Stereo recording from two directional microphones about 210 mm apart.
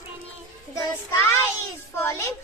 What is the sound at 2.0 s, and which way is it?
Music, 15° left (ahead or behind).